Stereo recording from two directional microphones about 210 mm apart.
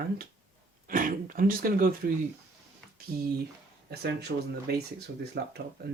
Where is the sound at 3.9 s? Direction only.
50° right (ahead or behind).